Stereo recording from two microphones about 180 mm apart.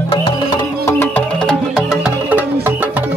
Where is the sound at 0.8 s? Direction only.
5° left (ahead or behind); by 3.1 s 10° right (ahead or behind).